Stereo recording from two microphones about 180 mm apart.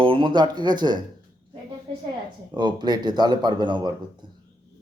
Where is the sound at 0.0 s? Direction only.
30° right (ahead or behind).